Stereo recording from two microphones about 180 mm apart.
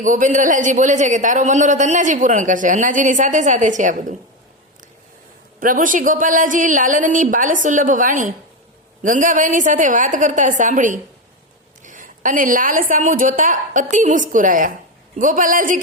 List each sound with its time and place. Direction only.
0.0 s a man's voice: 45° right (ahead or behind)
5.5 s a man's voice: 50° right (ahead or behind)